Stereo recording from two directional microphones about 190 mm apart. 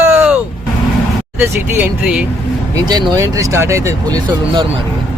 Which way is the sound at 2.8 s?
20° right (ahead or behind).